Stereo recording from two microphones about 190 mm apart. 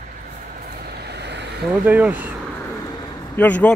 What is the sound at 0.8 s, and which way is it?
Vehicle, 60° right (ahead or behind).